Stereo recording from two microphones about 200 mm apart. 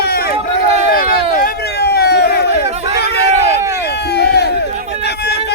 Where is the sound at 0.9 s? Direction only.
45° left (ahead or behind).